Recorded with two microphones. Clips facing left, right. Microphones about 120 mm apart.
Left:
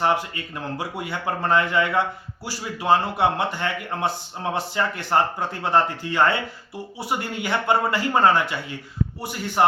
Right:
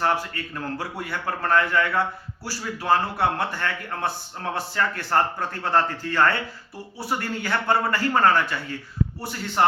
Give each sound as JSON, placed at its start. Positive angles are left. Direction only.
{"t": 0.0, "sound": "speech", "side_deg": 20}